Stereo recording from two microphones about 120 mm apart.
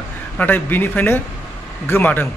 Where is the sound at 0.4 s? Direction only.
15° left (ahead or behind).